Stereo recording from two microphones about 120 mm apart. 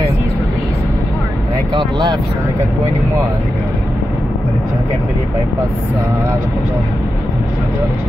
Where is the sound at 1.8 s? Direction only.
35° right (ahead or behind).